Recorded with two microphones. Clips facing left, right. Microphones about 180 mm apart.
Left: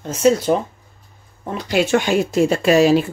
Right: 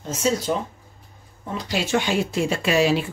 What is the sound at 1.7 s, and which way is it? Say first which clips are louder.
Speech: left 6 dB; 50° left (ahead or behind).